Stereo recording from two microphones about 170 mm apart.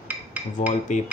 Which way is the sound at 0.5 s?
45° left (ahead or behind).